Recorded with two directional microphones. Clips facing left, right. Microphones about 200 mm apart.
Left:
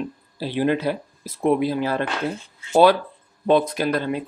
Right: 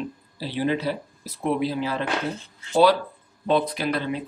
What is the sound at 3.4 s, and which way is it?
Speech, 50° left (ahead or behind).